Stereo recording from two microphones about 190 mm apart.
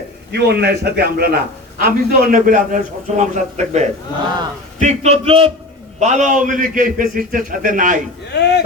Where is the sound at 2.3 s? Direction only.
45° right (ahead or behind).